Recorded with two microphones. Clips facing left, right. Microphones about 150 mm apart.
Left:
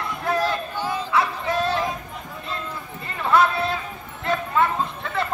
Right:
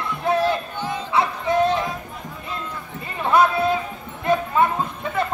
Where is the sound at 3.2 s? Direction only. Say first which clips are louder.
Right 2 dB; 15° right (ahead or behind).